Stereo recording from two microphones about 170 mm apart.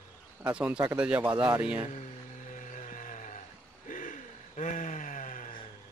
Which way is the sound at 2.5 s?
50° left (ahead or behind).